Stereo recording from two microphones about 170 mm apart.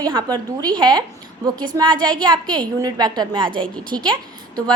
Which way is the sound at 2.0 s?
5° left (ahead or behind).